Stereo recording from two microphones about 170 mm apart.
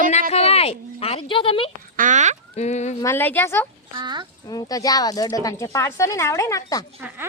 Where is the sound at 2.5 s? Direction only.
40° left (ahead or behind).